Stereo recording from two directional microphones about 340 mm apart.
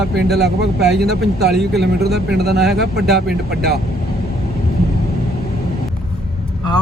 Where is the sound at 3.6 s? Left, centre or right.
Right.